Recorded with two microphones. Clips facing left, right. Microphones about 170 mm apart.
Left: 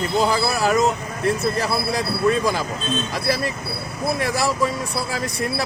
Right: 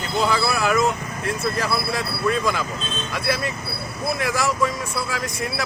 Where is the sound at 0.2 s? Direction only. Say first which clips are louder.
Even; 35° left (ahead or behind).